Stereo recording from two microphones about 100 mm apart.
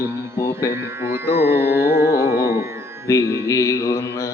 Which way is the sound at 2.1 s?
25° right (ahead or behind).